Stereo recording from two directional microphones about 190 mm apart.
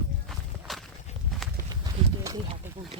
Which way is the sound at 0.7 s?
Centre (ahead or behind).